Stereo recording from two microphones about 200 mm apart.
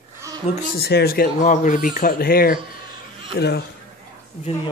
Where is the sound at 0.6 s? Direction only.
50° left (ahead or behind).